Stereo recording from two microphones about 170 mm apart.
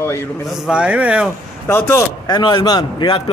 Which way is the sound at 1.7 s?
15° left (ahead or behind).